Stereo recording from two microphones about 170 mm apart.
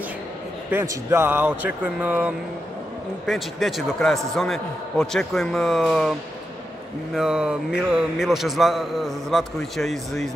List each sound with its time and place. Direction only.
0.7 s a man's voice: 15° right (ahead or behind)
7.2 s a man's voice: 5° right (ahead or behind)